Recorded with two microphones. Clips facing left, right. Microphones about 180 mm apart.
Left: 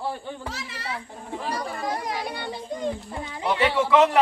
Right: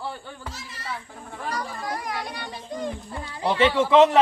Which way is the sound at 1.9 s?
25° left (ahead or behind).